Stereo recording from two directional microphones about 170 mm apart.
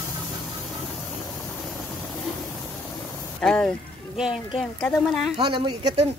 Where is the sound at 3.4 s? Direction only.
5° left (ahead or behind).